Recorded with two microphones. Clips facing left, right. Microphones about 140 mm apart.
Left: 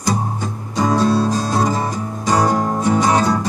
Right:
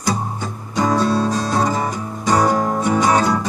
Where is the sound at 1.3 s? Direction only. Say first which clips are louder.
Left 1 dB; 35° left (ahead or behind).